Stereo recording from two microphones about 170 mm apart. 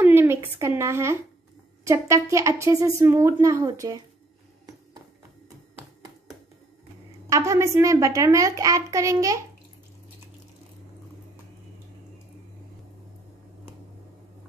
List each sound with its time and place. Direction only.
0.0 s a sound: 15° right (ahead or behind)
1.9 s speech: 15° right (ahead or behind)
7.2 s a child's voice: 20° right (ahead or behind)